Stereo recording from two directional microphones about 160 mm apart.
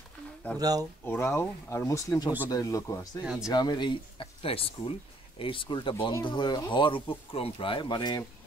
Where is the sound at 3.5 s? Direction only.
25° left (ahead or behind).